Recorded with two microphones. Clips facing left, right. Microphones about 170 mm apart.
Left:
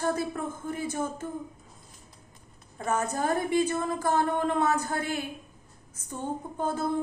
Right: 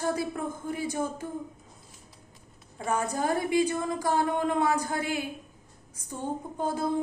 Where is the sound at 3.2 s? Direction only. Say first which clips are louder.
Even; 15° right (ahead or behind).